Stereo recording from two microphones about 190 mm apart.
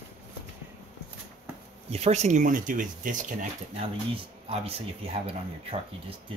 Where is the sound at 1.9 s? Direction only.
35° right (ahead or behind).